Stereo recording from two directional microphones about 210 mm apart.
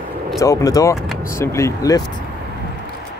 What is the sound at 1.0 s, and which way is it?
Vehicle, centre (ahead or behind).